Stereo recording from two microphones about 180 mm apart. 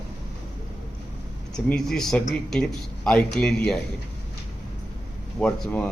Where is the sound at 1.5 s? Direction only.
5° left (ahead or behind).